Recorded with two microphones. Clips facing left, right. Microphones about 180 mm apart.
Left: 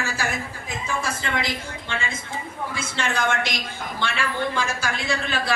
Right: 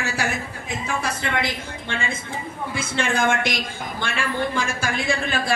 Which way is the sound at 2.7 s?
55° right (ahead or behind).